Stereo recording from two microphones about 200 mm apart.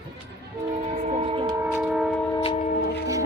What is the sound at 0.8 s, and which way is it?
Speech, 30° right (ahead or behind).